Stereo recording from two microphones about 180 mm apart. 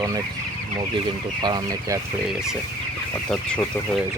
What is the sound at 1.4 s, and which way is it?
Speech, 20° right (ahead or behind).